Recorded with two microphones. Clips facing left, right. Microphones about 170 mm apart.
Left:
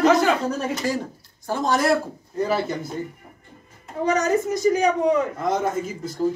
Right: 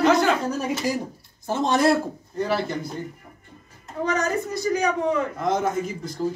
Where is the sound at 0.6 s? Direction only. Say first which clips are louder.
Even; 10° right (ahead or behind); by 1.9 s 30° right (ahead or behind).